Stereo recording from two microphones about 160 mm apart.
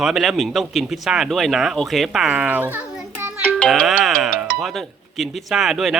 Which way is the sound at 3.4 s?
5° left (ahead or behind).